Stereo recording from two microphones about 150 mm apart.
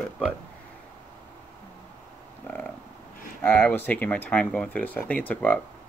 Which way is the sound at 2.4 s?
10° left (ahead or behind).